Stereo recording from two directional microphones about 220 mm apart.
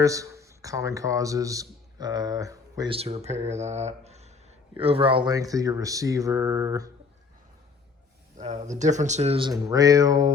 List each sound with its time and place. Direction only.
0.0 s speech: 15° right (ahead or behind)
8.4 s speech: 30° right (ahead or behind); by 10.3 s 15° right (ahead or behind)